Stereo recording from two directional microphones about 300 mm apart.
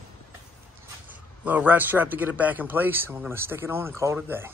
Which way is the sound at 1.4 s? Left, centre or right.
Centre.